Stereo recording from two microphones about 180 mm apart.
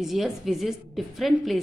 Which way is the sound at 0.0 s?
Centre (ahead or behind).